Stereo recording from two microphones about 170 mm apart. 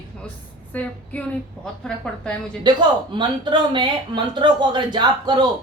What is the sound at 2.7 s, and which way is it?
Speech, 25° right (ahead or behind).